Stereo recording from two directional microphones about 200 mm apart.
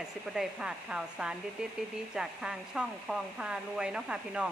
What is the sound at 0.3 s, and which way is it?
Speech, 5° right (ahead or behind).